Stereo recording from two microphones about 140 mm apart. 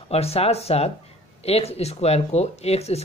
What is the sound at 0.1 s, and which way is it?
Speech, 45° left (ahead or behind).